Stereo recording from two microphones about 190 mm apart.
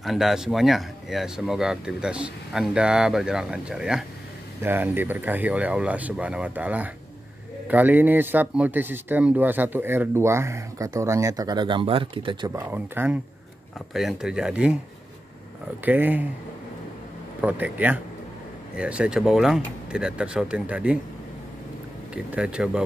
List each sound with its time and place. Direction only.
0.0 s speech: centre (ahead or behind)
15.8 s speech: 10° right (ahead or behind)
17.4 s speech: 10° right (ahead or behind)
22.1 s speech: 5° right (ahead or behind)